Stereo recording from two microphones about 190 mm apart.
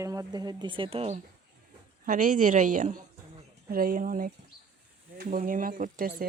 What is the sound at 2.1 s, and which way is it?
Speech, 45° right (ahead or behind).